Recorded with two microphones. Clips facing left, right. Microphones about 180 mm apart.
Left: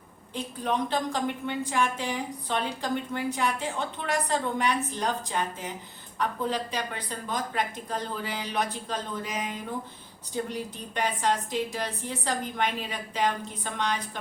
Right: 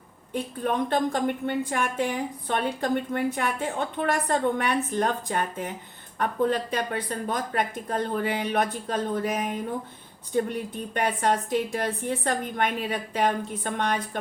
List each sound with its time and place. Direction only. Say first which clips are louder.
0.6 s a woman's voice: right 3 dB; 50° right (ahead or behind)